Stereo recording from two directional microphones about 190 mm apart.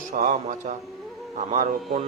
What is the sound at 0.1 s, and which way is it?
Speech, 45° right (ahead or behind).